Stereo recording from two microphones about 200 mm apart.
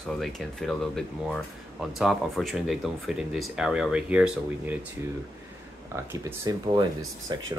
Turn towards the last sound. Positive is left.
turn(degrees=-20)  # may be behind; listen again after turning